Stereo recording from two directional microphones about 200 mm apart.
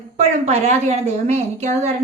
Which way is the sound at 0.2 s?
30° right (ahead or behind).